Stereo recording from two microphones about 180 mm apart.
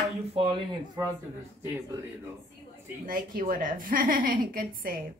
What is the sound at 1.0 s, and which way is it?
Speech, 15° right (ahead or behind).